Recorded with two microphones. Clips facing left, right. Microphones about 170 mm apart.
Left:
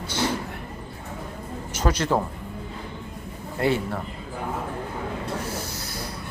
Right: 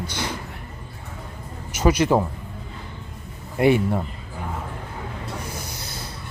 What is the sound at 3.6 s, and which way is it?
Speech, 15° right (ahead or behind).